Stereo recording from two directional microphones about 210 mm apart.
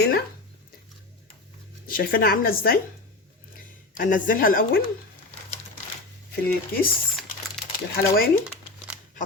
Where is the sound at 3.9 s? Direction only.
40° left (ahead or behind).